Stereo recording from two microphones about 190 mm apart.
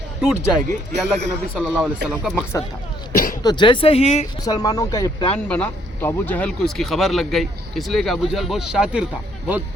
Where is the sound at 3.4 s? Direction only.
25° left (ahead or behind).